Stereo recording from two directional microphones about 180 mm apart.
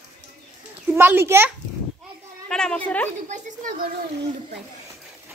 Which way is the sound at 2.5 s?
5° left (ahead or behind).